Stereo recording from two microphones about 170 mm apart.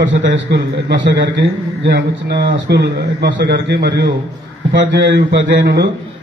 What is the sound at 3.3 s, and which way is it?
A man's voice, 90° right.